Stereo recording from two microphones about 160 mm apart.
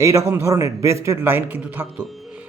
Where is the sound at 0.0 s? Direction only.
20° right (ahead or behind).